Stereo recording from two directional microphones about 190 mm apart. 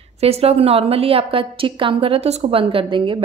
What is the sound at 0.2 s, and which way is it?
A woman's voice, 30° right (ahead or behind).